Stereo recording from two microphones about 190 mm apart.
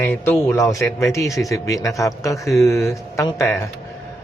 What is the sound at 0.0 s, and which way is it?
A man's voice, 10° left (ahead or behind).